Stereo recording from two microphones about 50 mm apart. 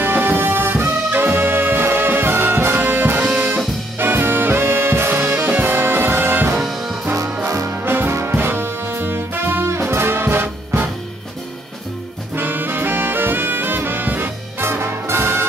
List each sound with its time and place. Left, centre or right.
0.0 s music: right
2.8 s music: right
3.3 s brass instrument: centre
4.0 s music: right
6.6 s music: centre
7.4 s music: right
7.7 s brass instrument: right
8.1 s brass instrument: right
8.4 s music: right
9.7 s brass instrument: right
12.4 s brass instrument: right